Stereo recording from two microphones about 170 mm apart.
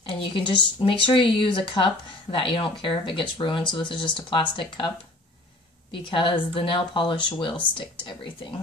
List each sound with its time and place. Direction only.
0.0 s speech: 30° left (ahead or behind)